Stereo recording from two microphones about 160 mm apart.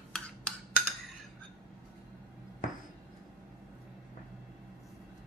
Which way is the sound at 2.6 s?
50° left (ahead or behind).